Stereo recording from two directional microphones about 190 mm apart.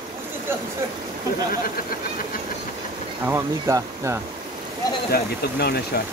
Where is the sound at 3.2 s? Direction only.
15° right (ahead or behind).